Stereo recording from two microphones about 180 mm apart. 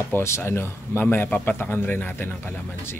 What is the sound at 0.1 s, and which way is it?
A man's voice, 15° left (ahead or behind).